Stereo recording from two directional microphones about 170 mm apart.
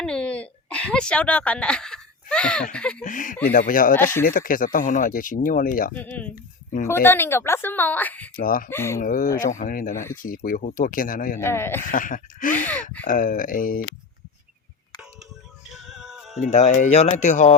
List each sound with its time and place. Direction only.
0.0 s a sound: 5° left (ahead or behind)
2.7 s a woman's voice: 5° left (ahead or behind)
3.0 s speech: 50° left (ahead or behind)
5.9 s a woman's voice: 10° left (ahead or behind)
8.4 s speech: 55° left (ahead or behind)
8.7 s a woman's voice: 15° left (ahead or behind)
9.0 s speech: 50° left (ahead or behind)
11.4 s a woman's voice: 15° left (ahead or behind)
11.9 s speech: 50° left (ahead or behind)
15.7 s music: centre (ahead or behind)
16.4 s speech: 45° left (ahead or behind)